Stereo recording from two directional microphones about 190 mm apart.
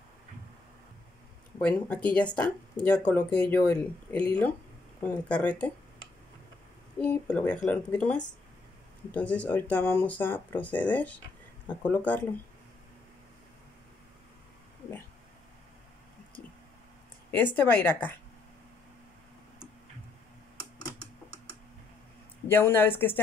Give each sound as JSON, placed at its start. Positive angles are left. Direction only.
{"t": 1.6, "sound": "speech", "side_deg": 5}
{"t": 4.1, "sound": "speech", "side_deg": 20}
{"t": 5.0, "sound": "speech", "side_deg": 5}
{"t": 7.0, "sound": "speech", "side_deg": 10}
{"t": 17.3, "sound": "speech", "side_deg": 10}
{"t": 22.5, "sound": "speech", "side_deg": 10}